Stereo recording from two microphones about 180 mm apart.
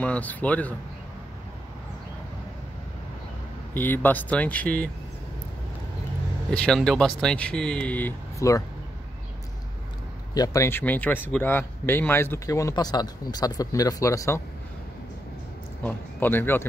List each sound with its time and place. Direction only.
0.0 s speech: 10° left (ahead or behind)
3.7 s speech: 10° left (ahead or behind)
6.5 s speech: 5° left (ahead or behind)
10.3 s speech: 20° left (ahead or behind)
15.8 s speech: 10° left (ahead or behind)